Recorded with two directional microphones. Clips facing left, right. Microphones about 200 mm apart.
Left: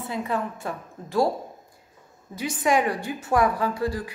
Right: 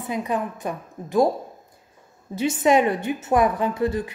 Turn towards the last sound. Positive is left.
turn(degrees=-20)  # may be behind; listen again after turning